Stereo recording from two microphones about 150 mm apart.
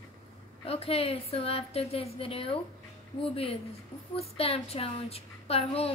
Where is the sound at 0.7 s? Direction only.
40° left (ahead or behind).